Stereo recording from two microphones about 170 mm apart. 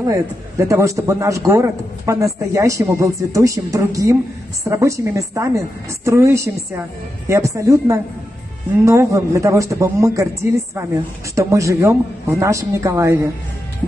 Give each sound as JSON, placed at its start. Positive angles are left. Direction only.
{"t": 0.1, "sound": "a man's voice", "side_deg": -20}